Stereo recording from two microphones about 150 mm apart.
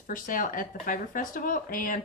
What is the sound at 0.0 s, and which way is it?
Speech, 65° left (ahead or behind).